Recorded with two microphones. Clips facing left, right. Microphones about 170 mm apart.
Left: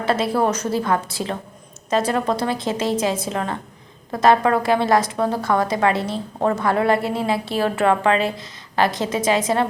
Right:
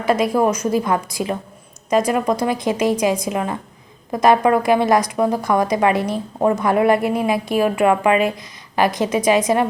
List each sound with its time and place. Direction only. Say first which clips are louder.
0.0 s a woman's voice: right 3 dB; 15° right (ahead or behind)